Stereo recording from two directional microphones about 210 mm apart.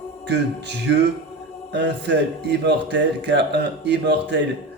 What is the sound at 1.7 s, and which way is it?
A man's voice, 55° right (ahead or behind).